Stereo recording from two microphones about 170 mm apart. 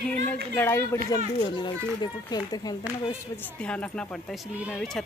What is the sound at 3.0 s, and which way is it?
Speech, 10° left (ahead or behind).